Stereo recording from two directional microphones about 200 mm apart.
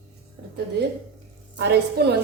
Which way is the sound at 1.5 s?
55° right (ahead or behind).